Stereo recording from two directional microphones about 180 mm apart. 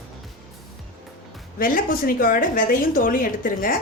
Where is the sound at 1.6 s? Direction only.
50° left (ahead or behind).